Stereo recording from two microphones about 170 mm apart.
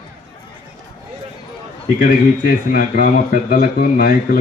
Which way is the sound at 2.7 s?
60° left (ahead or behind).